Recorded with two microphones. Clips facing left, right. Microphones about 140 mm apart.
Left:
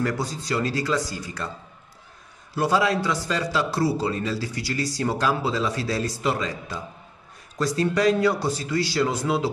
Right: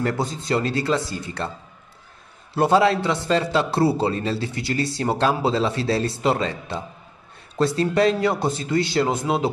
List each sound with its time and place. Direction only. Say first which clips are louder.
0.0 s a man's voice: right 2 dB; 25° right (ahead or behind)
2.5 s a man's voice: right 4 dB; 25° right (ahead or behind)